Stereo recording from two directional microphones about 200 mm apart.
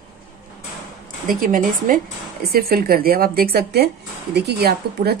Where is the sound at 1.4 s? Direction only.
45° right (ahead or behind).